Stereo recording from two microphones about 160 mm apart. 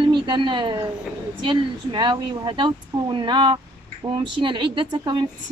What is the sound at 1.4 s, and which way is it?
A woman's voice, 30° right (ahead or behind).